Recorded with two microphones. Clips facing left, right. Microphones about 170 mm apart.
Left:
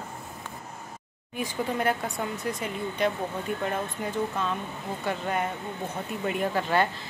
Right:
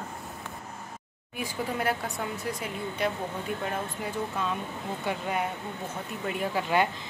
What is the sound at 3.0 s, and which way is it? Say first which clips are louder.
Speech: left 3 dB; 5° right (ahead or behind).